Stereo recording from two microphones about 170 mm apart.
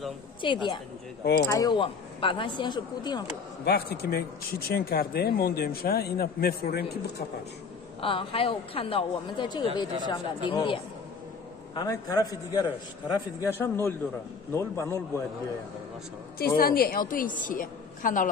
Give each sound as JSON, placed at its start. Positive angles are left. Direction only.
{"t": 0.4, "sound": "speech", "side_deg": 30}
{"t": 3.6, "sound": "speech", "side_deg": 70}
{"t": 8.0, "sound": "a woman's voice", "side_deg": 30}
{"t": 16.5, "sound": "a woman's voice", "side_deg": 60}